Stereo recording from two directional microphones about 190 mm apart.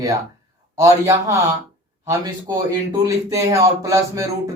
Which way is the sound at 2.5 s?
15° right (ahead or behind).